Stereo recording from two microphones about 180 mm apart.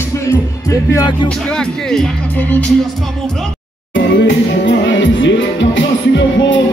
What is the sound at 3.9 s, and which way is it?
Music, 85° left.